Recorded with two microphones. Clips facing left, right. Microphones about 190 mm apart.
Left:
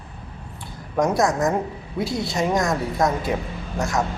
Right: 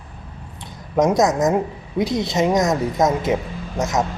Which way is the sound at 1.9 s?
20° right (ahead or behind).